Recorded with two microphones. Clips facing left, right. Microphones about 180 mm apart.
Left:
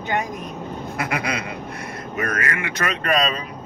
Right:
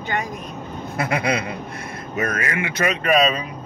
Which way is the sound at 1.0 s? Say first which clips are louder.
Right 4 dB; 25° right (ahead or behind).